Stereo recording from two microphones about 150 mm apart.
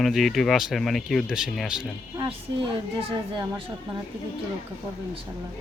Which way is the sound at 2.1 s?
35° right (ahead or behind).